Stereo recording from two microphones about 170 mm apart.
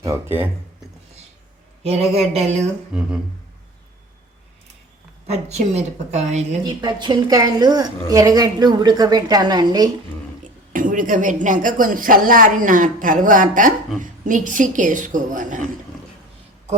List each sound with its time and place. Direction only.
0.0 s speech: 15° right (ahead or behind)
1.8 s speech: 35° right (ahead or behind)
5.2 s speech: 40° right (ahead or behind)
6.8 s a woman's voice: 25° right (ahead or behind)
10.4 s a woman's voice: 50° right (ahead or behind)